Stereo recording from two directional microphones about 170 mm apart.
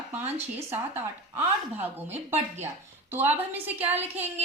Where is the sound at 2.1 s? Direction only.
40° right (ahead or behind).